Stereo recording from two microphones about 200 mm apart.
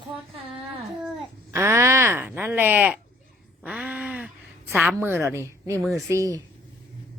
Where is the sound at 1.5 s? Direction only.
15° right (ahead or behind).